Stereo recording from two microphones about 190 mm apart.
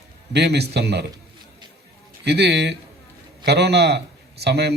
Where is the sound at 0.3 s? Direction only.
60° right (ahead or behind).